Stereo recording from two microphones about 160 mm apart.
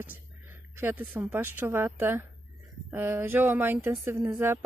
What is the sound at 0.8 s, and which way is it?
Speech, 10° right (ahead or behind).